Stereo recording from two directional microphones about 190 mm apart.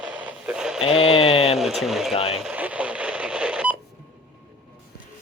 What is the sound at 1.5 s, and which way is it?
Speech, centre (ahead or behind).